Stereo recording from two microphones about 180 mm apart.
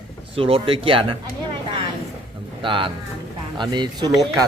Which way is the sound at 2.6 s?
25° right (ahead or behind).